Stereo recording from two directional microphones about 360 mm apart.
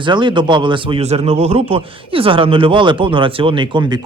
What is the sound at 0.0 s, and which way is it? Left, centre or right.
Speech, centre.